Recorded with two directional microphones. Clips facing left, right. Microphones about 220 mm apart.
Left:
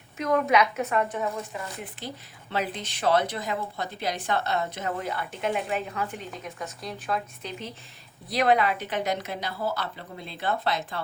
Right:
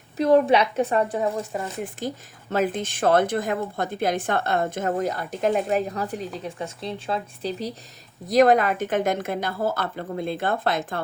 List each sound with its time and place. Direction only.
0.2 s a woman's voice: 30° right (ahead or behind)
1.8 s a woman's voice: 45° right (ahead or behind)
8.3 s a woman's voice: 45° right (ahead or behind)